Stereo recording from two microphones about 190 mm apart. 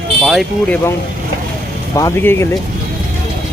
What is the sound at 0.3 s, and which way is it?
Speech, centre (ahead or behind).